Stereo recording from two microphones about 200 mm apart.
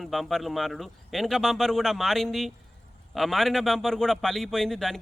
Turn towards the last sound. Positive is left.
turn(degrees=0)  # may be behind; listen again after turning